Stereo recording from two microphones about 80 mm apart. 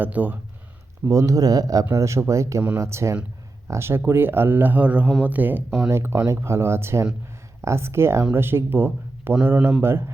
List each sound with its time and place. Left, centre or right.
0.0 s speech: right
1.0 s speech: right
1.9 s speech: right; by 9.7 s centre